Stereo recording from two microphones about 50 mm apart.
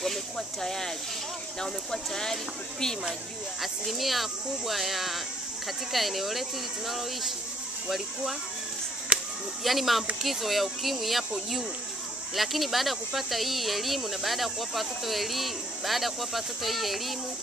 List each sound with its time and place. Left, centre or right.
0.0 s speech: centre
3.6 s speech: centre
9.1 s chop: right
9.6 s speech: centre